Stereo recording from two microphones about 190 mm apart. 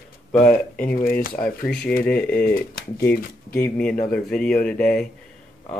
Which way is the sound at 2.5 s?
55° left (ahead or behind).